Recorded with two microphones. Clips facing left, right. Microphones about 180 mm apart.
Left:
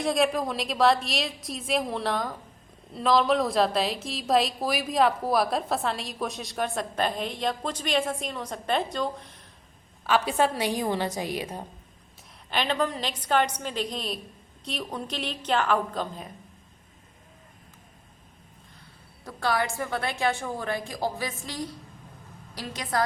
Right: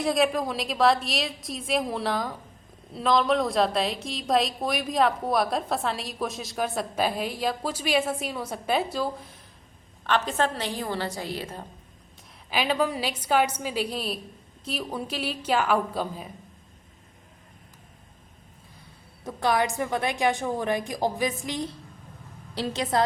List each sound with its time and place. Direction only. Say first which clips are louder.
0.0 s a woman's voice: right 1 dB; centre (ahead or behind)
10.0 s a woman's voice: left 1 dB; 10° left (ahead or behind)
12.5 s a woman's voice: right 2 dB; 5° right (ahead or behind)
19.2 s a woman's voice: right 3 dB; 20° right (ahead or behind)